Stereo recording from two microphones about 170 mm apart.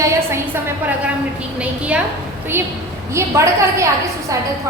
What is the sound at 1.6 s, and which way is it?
Speech, 5° right (ahead or behind).